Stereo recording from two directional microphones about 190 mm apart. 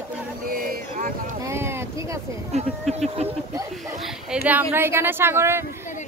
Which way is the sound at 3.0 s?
35° right (ahead or behind).